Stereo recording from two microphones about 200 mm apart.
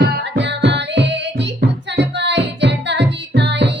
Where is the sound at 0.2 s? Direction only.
60° right (ahead or behind).